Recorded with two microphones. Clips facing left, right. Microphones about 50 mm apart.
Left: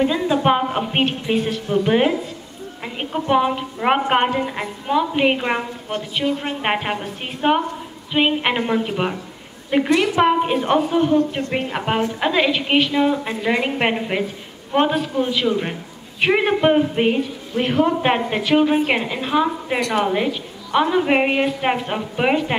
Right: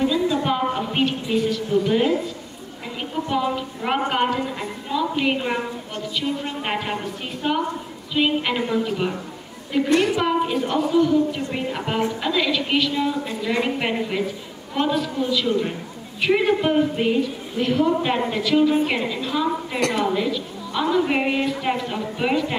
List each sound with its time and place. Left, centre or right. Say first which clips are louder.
0.0 s a woman's voice: left 3 dB; left